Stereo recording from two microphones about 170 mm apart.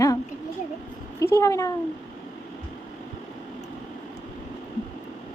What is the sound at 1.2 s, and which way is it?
Speech, 20° left (ahead or behind).